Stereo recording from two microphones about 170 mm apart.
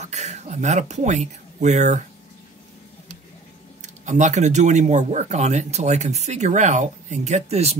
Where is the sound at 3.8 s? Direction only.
45° right (ahead or behind).